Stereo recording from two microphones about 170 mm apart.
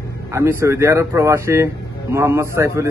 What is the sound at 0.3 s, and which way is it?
A man's voice, 15° right (ahead or behind).